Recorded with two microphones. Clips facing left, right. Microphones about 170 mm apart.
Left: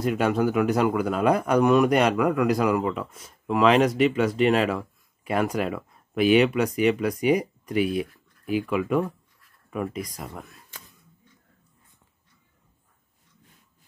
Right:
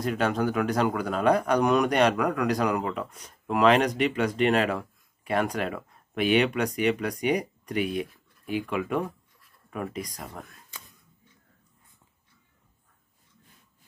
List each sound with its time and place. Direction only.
0.0 s speech: 10° left (ahead or behind)